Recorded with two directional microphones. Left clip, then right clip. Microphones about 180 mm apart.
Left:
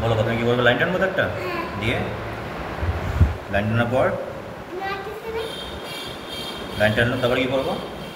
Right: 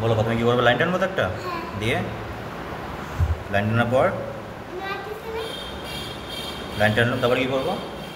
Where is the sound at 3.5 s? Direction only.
65° right (ahead or behind).